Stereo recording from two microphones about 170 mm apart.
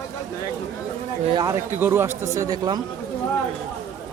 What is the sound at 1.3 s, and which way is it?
A man's voice, 20° right (ahead or behind).